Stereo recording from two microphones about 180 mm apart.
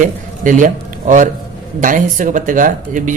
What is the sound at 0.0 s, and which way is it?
A man's voice, 45° right (ahead or behind).